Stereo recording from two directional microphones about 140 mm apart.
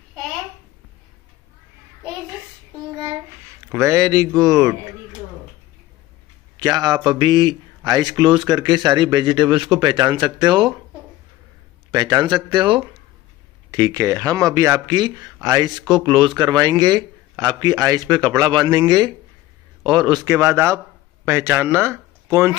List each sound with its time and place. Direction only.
3.7 s speech: 20° right (ahead or behind)
6.5 s speech: 30° right (ahead or behind)
11.9 s speech: 30° right (ahead or behind)